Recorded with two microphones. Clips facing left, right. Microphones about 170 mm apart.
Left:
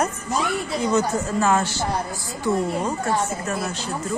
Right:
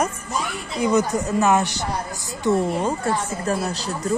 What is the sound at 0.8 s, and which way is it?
Speech, 15° right (ahead or behind).